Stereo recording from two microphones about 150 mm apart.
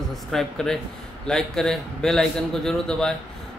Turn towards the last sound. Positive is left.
turn(degrees=5)  # may be behind; listen again after turning